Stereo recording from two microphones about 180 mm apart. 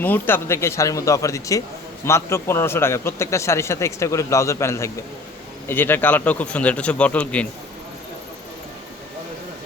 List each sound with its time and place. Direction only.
0.0 s a man's voice: 10° left (ahead or behind)